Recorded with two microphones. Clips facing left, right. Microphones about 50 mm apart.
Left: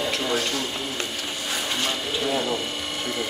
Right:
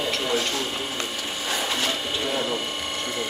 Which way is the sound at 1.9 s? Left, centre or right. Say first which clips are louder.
Left 1 dB; centre.